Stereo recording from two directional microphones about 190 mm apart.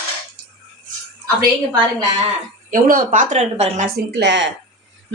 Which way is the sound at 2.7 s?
45° right (ahead or behind).